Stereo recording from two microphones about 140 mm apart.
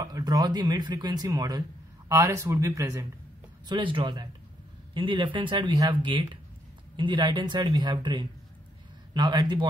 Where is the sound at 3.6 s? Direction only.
35° right (ahead or behind).